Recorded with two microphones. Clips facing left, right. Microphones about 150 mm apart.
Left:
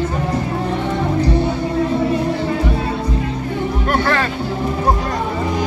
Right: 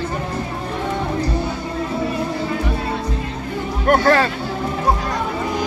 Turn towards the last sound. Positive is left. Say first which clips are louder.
# right 3 dB
turn(degrees=-40)  # may be behind; listen again after turning